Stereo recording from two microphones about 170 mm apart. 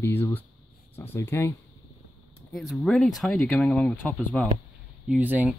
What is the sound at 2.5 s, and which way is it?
Speech, centre (ahead or behind).